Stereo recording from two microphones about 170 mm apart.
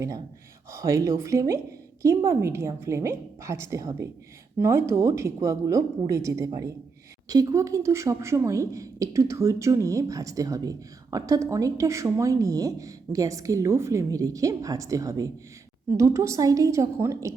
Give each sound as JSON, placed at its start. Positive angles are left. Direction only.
{"t": 0.7, "sound": "a woman's voice", "side_deg": -20}